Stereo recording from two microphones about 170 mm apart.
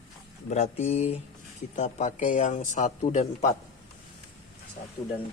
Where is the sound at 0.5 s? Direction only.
45° left (ahead or behind).